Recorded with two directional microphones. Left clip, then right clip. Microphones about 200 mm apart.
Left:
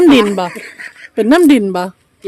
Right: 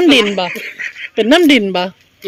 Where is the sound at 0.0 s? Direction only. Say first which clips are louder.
Left 1 dB; 15° left (ahead or behind).